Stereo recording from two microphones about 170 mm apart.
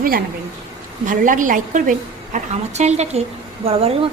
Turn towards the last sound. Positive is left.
turn(degrees=-35)  # may be behind; listen again after turning